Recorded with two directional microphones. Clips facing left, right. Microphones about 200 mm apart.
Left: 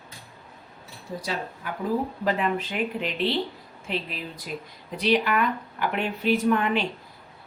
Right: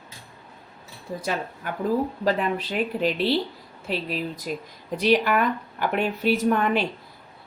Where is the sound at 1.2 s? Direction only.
50° right (ahead or behind).